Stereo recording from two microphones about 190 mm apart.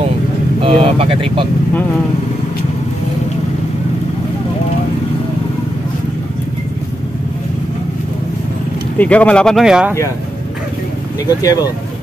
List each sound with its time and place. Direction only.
0.6 s speech: 30° right (ahead or behind)
8.9 s speech: 5° left (ahead or behind)
11.2 s speech: 20° left (ahead or behind)